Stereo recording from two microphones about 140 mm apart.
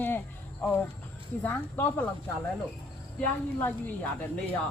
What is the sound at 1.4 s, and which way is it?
Speech, 15° left (ahead or behind).